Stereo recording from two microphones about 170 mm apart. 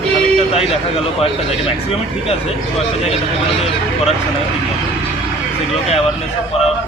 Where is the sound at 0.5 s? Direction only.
35° left (ahead or behind).